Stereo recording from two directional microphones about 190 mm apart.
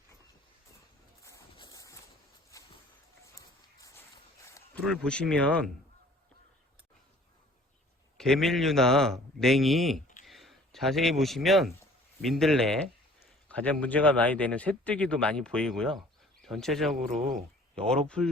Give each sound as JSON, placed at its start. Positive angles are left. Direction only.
{"t": 1.2, "sound": "a sound", "side_deg": 15}
{"t": 3.8, "sound": "walk", "side_deg": 15}
{"t": 4.4, "sound": "a sound", "side_deg": 15}
{"t": 4.9, "sound": "speech", "side_deg": 5}
{"t": 8.2, "sound": "a man's voice", "side_deg": 0}
{"t": 17.2, "sound": "speech", "side_deg": -50}
{"t": 17.7, "sound": "speech", "side_deg": 5}